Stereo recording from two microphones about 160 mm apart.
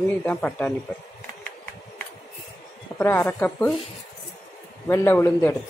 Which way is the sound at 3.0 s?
15° left (ahead or behind).